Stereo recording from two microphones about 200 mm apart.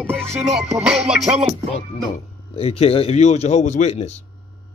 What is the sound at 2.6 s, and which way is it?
Speech, 30° left (ahead or behind).